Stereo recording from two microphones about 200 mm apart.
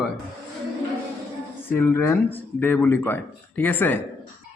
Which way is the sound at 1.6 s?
10° left (ahead or behind).